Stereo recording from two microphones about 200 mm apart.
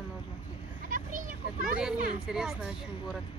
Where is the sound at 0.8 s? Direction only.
40° right (ahead or behind).